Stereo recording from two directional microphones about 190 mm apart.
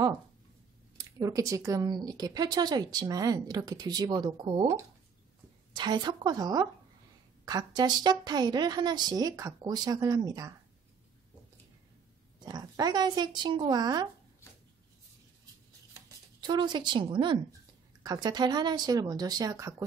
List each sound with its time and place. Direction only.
0.9 s speech: 20° right (ahead or behind)
12.4 s speech: 20° right (ahead or behind)
16.4 s speech: 25° right (ahead or behind)